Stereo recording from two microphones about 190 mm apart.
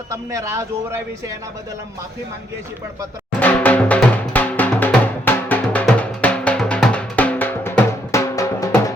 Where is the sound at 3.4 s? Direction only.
10° left (ahead or behind).